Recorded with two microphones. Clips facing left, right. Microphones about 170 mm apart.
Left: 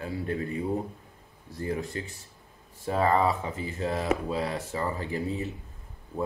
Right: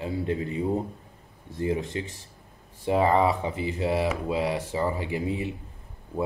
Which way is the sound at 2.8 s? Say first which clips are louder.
Right 3 dB; 15° right (ahead or behind).